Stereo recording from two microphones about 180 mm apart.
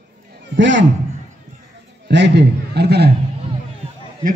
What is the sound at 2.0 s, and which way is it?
A man's voice, 75° right (ahead or behind).